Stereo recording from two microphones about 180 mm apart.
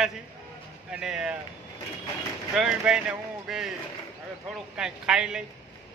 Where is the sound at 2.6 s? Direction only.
5° right (ahead or behind).